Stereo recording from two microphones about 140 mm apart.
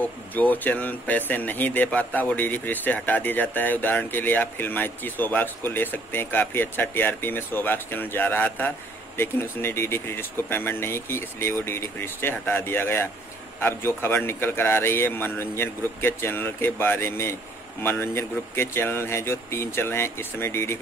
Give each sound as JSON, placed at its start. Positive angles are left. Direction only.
{"t": 0.0, "sound": "speech", "side_deg": 10}